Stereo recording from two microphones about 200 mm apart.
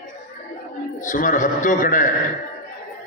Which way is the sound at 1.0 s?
40° left (ahead or behind).